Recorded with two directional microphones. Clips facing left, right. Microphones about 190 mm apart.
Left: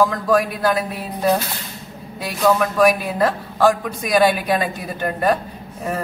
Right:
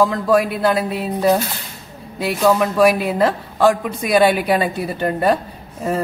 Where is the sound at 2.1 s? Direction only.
25° right (ahead or behind).